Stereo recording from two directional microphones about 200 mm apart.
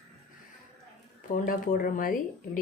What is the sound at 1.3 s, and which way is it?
Speech, 45° left (ahead or behind).